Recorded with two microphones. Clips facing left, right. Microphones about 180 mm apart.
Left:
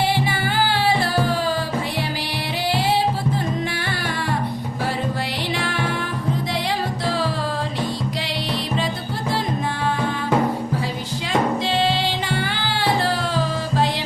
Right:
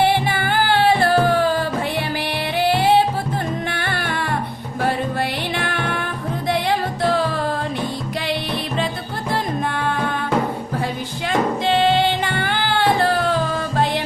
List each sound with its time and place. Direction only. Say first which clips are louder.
0.0 s music: right 3 dB; 55° right (ahead or behind)
5.5 s music: right 1 dB; 55° right (ahead or behind)
11.3 s music: right 2 dB; 55° right (ahead or behind)